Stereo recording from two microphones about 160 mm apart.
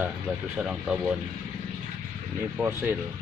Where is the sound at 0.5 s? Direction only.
5° right (ahead or behind).